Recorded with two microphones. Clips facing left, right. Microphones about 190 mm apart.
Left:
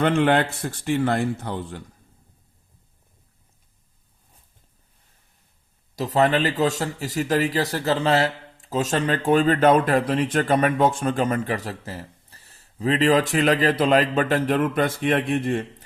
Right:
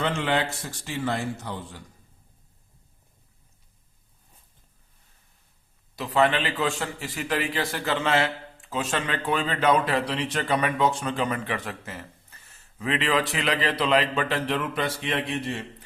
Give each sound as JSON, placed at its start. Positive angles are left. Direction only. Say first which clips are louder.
{"t": 0.0, "sound": "speech", "louder": "left 7 dB", "side_deg": 55}
{"t": 6.0, "sound": "a man's voice", "louder": "left 3 dB", "side_deg": 40}